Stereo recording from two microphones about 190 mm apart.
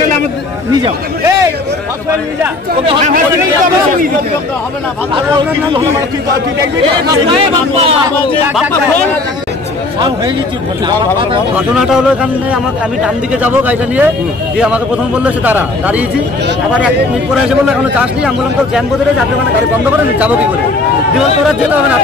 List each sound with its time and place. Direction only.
2.8 s speech: 25° right (ahead or behind)
9.9 s speech: 20° right (ahead or behind)
11.5 s a man's voice: 5° right (ahead or behind)
17.5 s a man's voice: 5° right (ahead or behind)